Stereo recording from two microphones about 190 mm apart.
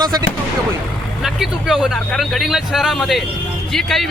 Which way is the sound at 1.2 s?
Centre (ahead or behind).